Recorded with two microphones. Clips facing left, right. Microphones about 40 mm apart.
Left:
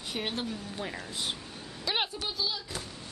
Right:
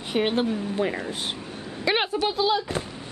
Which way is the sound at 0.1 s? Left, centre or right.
Right.